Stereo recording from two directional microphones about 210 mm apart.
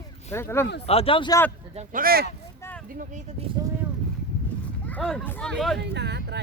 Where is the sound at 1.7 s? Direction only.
40° right (ahead or behind).